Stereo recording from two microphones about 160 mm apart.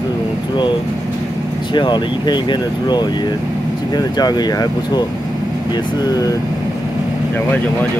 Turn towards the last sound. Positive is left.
turn(degrees=25)  # may be behind; listen again after turning